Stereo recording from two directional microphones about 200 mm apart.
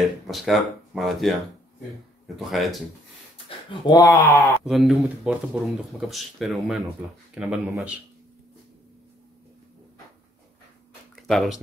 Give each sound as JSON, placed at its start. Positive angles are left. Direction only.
{"t": 0.3, "sound": "speech", "side_deg": 0}
{"t": 3.4, "sound": "speech", "side_deg": 20}
{"t": 4.6, "sound": "speech", "side_deg": 0}
{"t": 11.1, "sound": "speech", "side_deg": 0}